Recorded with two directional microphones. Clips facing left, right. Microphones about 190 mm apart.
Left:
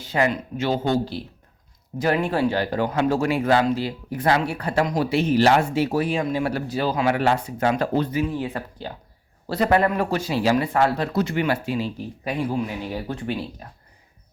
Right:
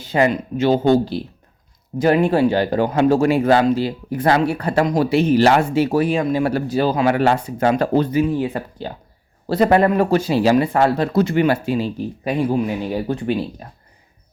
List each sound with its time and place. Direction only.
0.0 s speech: 20° right (ahead or behind)
8.4 s speech: 10° right (ahead or behind)
8.8 s speech: 30° right (ahead or behind)